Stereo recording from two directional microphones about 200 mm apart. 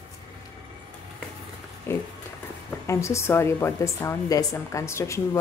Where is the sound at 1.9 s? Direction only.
10° left (ahead or behind).